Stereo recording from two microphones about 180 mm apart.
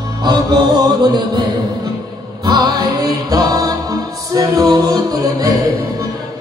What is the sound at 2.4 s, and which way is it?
Music, 20° right (ahead or behind).